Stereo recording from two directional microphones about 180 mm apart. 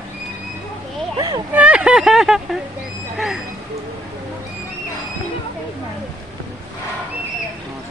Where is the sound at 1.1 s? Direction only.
25° right (ahead or behind).